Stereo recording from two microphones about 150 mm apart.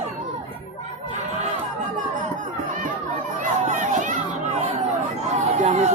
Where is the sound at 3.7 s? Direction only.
55° right (ahead or behind).